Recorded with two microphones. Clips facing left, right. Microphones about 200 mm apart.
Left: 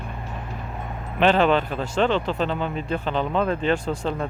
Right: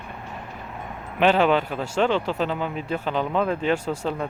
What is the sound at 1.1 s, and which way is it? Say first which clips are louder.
Speech: even; 10° right (ahead or behind).